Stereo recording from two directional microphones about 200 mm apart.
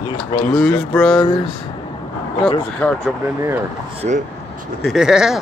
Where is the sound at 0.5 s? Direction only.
Centre (ahead or behind).